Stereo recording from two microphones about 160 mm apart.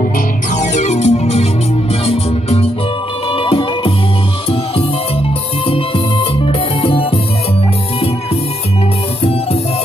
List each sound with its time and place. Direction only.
0.6 s music: 45° left (ahead or behind)
6.4 s music: 35° left (ahead or behind)